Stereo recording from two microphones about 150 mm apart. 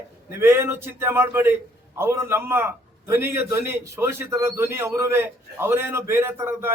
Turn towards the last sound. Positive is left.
turn(degrees=-15)  # may be behind; listen again after turning